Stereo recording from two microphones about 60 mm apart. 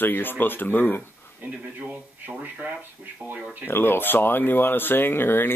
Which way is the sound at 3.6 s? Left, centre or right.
Left.